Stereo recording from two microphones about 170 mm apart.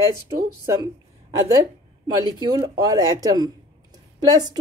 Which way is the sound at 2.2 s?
25° right (ahead or behind).